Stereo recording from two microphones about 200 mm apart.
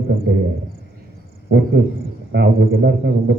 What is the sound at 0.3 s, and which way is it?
Speech, 60° right (ahead or behind).